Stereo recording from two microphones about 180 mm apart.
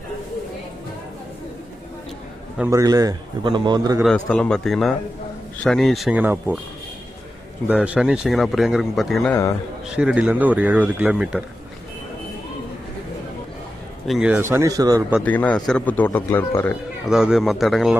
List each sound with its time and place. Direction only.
2.6 s a man's voice: 15° right (ahead or behind)
4.3 s a man's voice: 5° left (ahead or behind)
7.7 s a man's voice: 5° right (ahead or behind)
9.3 s speech: 15° left (ahead or behind)
9.8 s speech: 5° right (ahead or behind)
14.1 s a man's voice: 5° right (ahead or behind)
14.5 s a man's voice: 20° right (ahead or behind)
15.2 s speech: 10° left (ahead or behind)
17.1 s a man's voice: 5° right (ahead or behind)